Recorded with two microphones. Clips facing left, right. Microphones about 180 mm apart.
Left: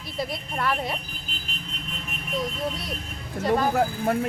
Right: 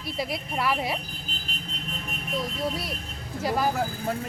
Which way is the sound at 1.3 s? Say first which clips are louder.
Left 1 dB; 35° right (ahead or behind).